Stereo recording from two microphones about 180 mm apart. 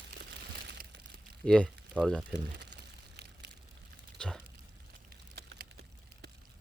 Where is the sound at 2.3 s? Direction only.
70° right (ahead or behind).